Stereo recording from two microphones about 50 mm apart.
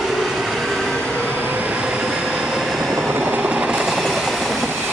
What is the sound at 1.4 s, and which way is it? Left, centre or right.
Train, right.